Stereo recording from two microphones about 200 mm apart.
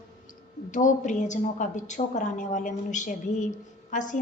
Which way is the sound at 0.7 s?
40° left (ahead or behind).